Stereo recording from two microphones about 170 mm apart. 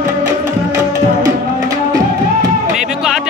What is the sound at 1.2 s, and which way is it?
Music, 20° right (ahead or behind).